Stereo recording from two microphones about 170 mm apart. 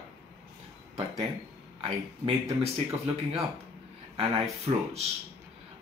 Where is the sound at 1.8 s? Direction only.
35° right (ahead or behind).